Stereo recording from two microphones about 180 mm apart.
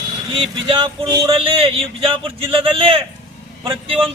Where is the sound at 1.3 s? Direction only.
30° right (ahead or behind).